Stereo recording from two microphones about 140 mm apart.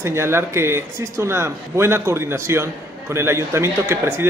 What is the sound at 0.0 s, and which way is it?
A man's voice, 20° right (ahead or behind).